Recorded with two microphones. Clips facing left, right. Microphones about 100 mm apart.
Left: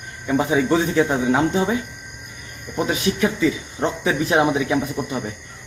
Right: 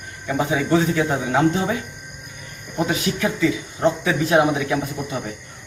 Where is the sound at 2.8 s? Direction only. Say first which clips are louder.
Left 3 dB; 25° left (ahead or behind).